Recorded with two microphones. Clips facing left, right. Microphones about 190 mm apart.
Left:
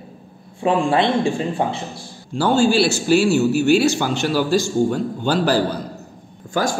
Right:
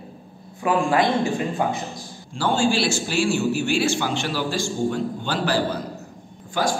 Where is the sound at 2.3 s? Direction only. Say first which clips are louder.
Left 5 dB; 40° left (ahead or behind).